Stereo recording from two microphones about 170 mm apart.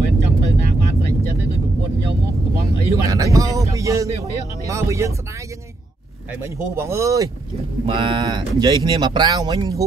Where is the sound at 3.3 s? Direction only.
20° right (ahead or behind).